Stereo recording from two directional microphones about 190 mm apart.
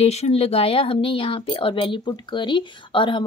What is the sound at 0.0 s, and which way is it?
Speech, 35° left (ahead or behind).